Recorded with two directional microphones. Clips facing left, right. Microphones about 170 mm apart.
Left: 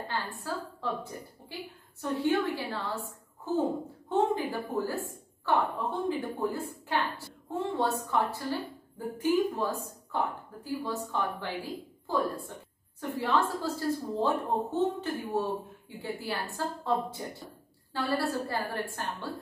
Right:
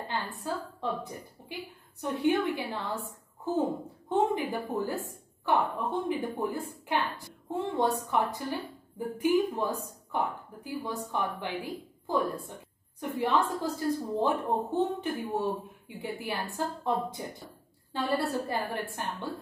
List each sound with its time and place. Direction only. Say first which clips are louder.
0.4 s a woman's voice: right 2 dB; 20° right (ahead or behind)